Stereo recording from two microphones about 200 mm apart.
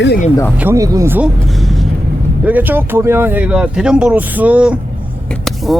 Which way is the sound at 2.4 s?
10° right (ahead or behind).